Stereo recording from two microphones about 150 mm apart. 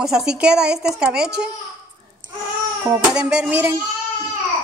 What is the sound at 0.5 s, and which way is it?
Speech, 90° right.